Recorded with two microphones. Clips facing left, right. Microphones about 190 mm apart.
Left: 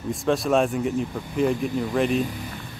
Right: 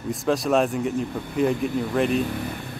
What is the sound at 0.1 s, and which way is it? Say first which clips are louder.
Speech: even; centre (ahead or behind).